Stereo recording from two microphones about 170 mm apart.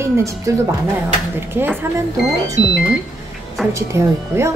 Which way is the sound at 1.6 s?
15° right (ahead or behind).